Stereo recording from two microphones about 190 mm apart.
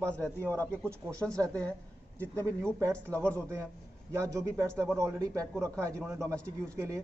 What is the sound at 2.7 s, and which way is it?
A man's voice, 15° right (ahead or behind).